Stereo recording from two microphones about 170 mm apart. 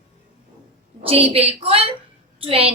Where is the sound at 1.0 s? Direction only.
35° right (ahead or behind).